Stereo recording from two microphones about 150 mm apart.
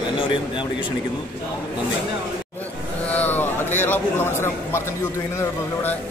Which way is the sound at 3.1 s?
10° left (ahead or behind).